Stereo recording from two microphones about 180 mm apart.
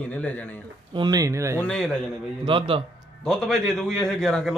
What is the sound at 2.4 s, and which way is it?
Speech, 30° right (ahead or behind).